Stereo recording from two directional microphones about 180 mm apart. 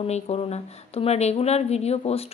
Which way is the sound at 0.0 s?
35° left (ahead or behind).